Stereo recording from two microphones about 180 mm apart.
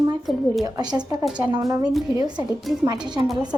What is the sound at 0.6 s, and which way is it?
Speech, 20° right (ahead or behind).